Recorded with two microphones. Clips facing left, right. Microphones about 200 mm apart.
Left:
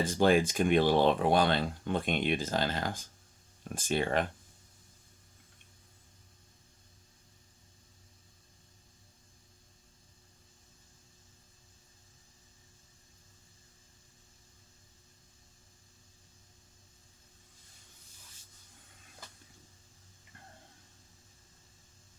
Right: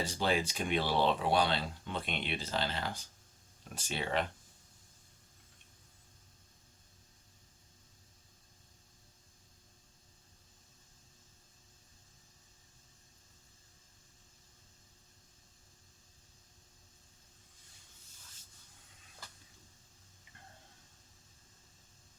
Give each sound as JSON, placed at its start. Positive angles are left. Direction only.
{"t": 0.0, "sound": "speech", "side_deg": 50}